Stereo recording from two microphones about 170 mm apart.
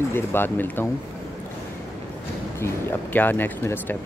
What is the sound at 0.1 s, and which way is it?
Speech, 10° left (ahead or behind).